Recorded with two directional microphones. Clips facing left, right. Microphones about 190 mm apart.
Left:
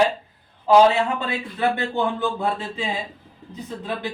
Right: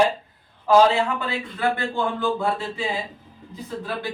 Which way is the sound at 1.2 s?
20° left (ahead or behind).